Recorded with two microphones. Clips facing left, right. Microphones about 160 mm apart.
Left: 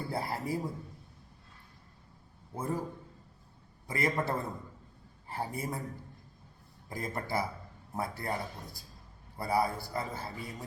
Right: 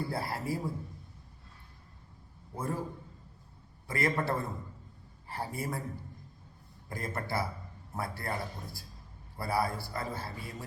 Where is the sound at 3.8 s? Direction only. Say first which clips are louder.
Right 1 dB; 15° left (ahead or behind).